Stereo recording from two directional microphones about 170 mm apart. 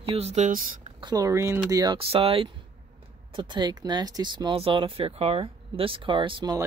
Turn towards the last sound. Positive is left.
turn(degrees=-25)  # may be behind; listen again after turning